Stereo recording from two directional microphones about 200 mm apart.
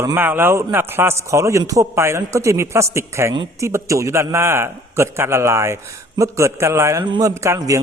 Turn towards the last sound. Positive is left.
turn(degrees=-15)  # may be behind; listen again after turning